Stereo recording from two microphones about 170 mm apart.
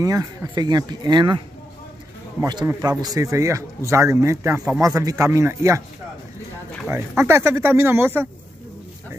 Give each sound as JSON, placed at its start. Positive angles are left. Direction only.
{"t": 0.0, "sound": "speech", "side_deg": -20}
{"t": 2.4, "sound": "a man's voice", "side_deg": -25}
{"t": 6.9, "sound": "a man's voice", "side_deg": -15}